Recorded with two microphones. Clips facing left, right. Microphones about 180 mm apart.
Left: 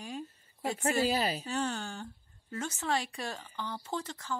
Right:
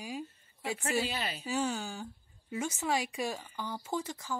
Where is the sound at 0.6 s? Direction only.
40° left (ahead or behind).